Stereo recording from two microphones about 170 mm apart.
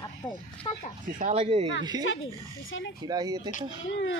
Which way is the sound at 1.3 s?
35° right (ahead or behind).